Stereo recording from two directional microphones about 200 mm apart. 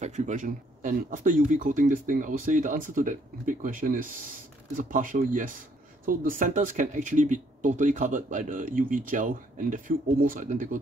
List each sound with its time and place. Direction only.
0.0 s speech: 35° right (ahead or behind)